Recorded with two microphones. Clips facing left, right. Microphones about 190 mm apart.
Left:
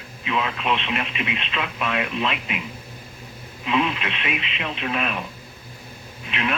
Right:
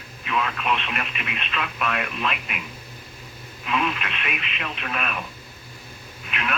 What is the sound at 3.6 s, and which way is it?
Speech, 25° left (ahead or behind).